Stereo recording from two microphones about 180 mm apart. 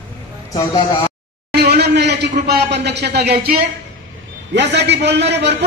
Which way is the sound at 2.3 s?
60° right (ahead or behind).